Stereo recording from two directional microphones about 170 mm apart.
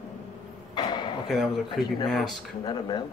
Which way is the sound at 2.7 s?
25° left (ahead or behind).